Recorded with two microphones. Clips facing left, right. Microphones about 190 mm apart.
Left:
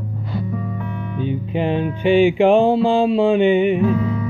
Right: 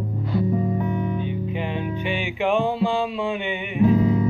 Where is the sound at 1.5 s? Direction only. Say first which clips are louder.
Left 7 dB; 35° left (ahead or behind).